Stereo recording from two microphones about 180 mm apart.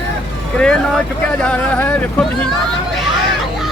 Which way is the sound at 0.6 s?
5° left (ahead or behind).